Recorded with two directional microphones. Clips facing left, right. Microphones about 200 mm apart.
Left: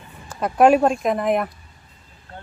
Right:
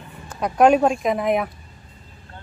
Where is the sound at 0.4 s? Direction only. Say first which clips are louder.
Left 1 dB; centre (ahead or behind).